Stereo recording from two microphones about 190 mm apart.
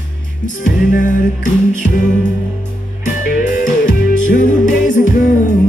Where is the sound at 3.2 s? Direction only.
45° left (ahead or behind).